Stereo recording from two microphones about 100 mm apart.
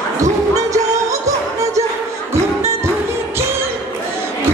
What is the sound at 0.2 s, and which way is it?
Music, 35° right (ahead or behind).